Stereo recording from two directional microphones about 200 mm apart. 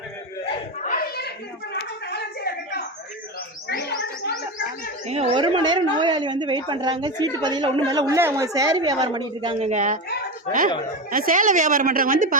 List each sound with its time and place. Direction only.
0.9 s a sound: 50° left (ahead or behind)
3.7 s gargling: 55° left (ahead or behind)
5.0 s a woman's voice: 30° right (ahead or behind)
11.1 s a woman's voice: 40° right (ahead or behind)